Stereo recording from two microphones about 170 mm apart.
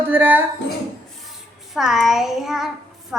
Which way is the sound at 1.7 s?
Centre (ahead or behind).